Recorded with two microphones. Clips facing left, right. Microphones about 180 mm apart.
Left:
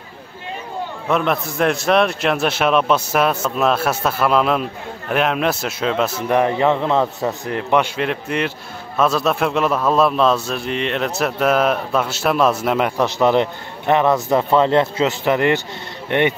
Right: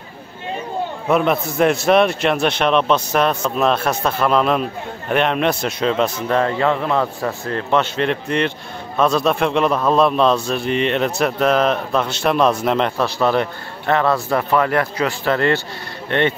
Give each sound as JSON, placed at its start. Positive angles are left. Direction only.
{"t": 1.1, "sound": "a man's voice", "side_deg": 0}
{"t": 13.0, "sound": "speech", "side_deg": 20}